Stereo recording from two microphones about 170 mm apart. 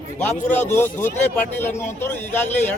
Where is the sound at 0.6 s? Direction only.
15° left (ahead or behind).